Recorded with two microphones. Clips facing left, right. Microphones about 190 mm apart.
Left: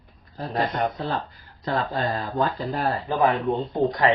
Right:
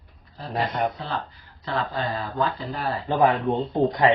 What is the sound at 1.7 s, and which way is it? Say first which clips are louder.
Speech: left 2 dB; 40° left (ahead or behind).